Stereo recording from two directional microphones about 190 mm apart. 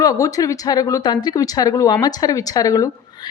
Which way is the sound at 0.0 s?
20° left (ahead or behind).